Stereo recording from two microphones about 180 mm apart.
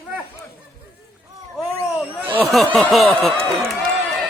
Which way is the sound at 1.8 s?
15° left (ahead or behind).